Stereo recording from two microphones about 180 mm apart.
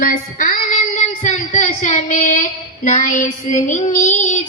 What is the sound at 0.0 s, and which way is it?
Child singing, 50° left (ahead or behind).